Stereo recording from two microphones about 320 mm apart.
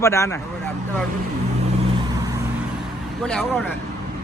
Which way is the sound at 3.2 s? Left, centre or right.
Centre.